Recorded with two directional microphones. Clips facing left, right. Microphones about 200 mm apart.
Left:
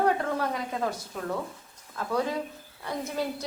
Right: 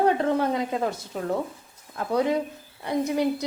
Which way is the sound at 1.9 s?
20° right (ahead or behind).